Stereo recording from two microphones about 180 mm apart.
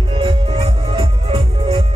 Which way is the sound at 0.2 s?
30° right (ahead or behind).